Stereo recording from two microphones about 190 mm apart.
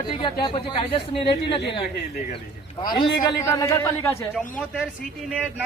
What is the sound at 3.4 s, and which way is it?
Speech, 15° left (ahead or behind).